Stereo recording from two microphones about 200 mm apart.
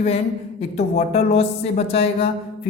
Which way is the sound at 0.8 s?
30° left (ahead or behind).